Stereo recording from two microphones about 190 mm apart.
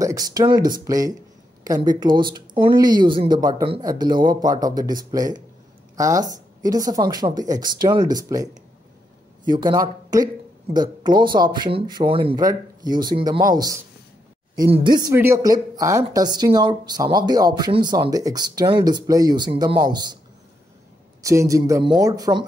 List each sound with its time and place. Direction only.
0.0 s speech: 20° right (ahead or behind)
21.2 s speech: 15° right (ahead or behind)